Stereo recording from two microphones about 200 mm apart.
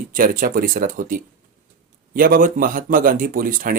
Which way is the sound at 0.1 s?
45° right (ahead or behind).